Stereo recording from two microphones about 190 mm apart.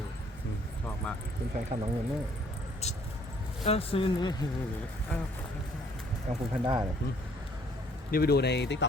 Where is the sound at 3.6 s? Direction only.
30° left (ahead or behind).